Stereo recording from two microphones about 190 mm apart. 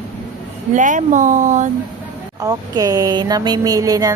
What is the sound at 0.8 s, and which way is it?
Speech, 40° right (ahead or behind).